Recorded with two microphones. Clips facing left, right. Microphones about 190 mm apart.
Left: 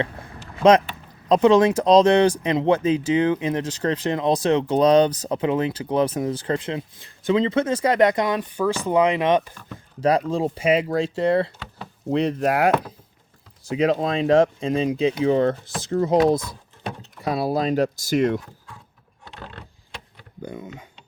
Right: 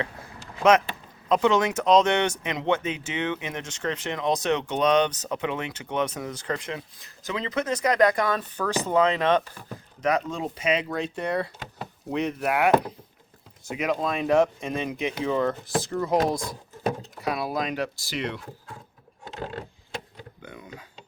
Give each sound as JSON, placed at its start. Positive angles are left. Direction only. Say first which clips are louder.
{"t": 0.5, "sound": "vehicle", "louder": "left 4 dB", "side_deg": 35}
{"t": 1.3, "sound": "speech", "louder": "left 6 dB", "side_deg": 30}
{"t": 10.0, "sound": "speech", "louder": "left 6 dB", "side_deg": 30}
{"t": 19.2, "sound": "a sound", "louder": "right 6 dB", "side_deg": -40}
{"t": 20.4, "sound": "speech", "louder": "left 9 dB", "side_deg": 30}